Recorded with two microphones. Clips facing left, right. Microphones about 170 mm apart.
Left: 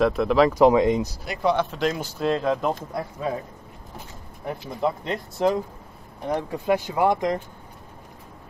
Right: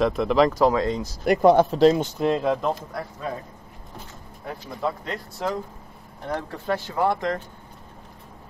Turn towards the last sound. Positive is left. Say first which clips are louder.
# left 2 dB
turn(degrees=15)  # may be behind; listen again after turning